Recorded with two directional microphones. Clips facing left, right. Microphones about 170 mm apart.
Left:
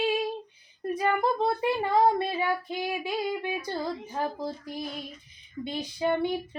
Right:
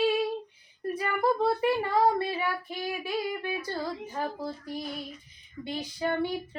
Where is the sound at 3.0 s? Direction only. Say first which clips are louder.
Left 1 dB; 20° left (ahead or behind).